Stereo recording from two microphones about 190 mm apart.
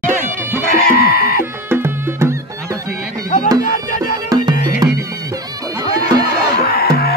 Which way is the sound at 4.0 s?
20° right (ahead or behind).